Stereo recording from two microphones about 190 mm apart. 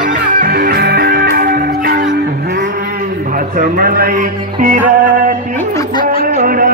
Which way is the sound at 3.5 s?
50° right (ahead or behind).